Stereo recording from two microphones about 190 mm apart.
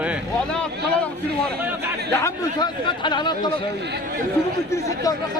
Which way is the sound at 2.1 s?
15° left (ahead or behind).